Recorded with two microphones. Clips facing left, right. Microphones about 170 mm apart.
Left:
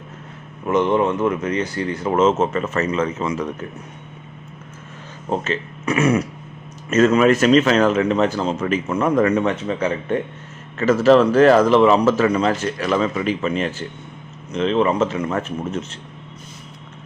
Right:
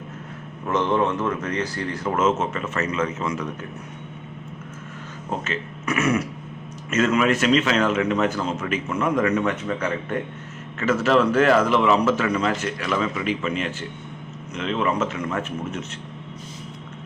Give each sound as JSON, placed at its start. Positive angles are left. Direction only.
{"t": 0.7, "sound": "speech", "side_deg": 15}
{"t": 5.5, "sound": "speech", "side_deg": 35}
{"t": 10.8, "sound": "speech", "side_deg": 35}